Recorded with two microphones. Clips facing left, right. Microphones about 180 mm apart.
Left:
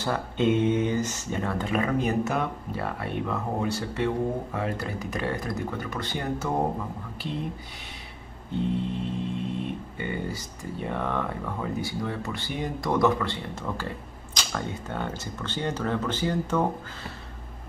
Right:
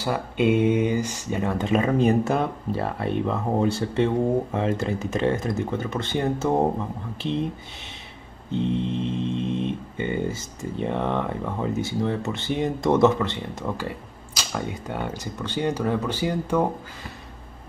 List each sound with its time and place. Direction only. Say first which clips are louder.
0.0 s speech: right 2 dB; 10° right (ahead or behind)
8.7 s speech: right 4 dB; 20° right (ahead or behind)